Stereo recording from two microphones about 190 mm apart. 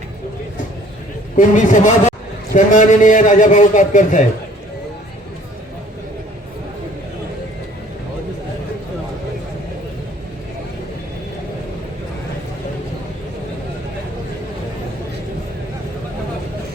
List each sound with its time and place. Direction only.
1.4 s a man's voice: 40° left (ahead or behind)